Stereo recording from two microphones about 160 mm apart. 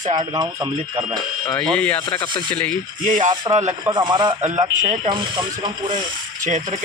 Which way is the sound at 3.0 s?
55° right (ahead or behind).